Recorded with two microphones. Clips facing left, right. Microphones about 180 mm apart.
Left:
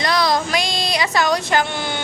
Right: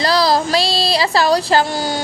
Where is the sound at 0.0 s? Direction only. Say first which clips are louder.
Right 4 dB; 30° right (ahead or behind).